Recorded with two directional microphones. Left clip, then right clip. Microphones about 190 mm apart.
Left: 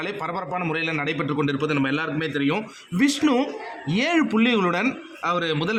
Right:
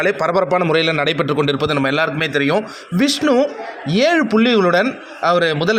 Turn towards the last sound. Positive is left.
turn(degrees=-20)  # may be behind; listen again after turning